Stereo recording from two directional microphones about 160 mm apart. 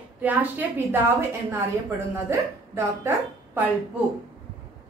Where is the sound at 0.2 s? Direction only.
10° right (ahead or behind).